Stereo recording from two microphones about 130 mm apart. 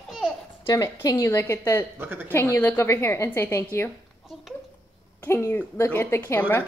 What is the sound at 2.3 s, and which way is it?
A woman's voice, 15° left (ahead or behind).